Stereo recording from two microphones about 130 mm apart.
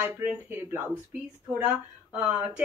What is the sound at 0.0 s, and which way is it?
Speech, 15° right (ahead or behind).